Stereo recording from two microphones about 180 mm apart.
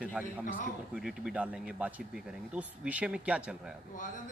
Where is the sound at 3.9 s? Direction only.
45° left (ahead or behind).